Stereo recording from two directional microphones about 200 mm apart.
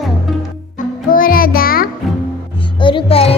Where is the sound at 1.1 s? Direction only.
45° left (ahead or behind).